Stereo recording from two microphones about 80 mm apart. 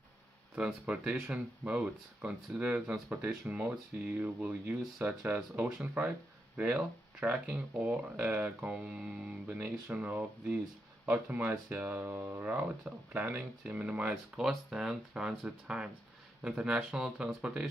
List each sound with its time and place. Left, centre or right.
0.8 s speech: centre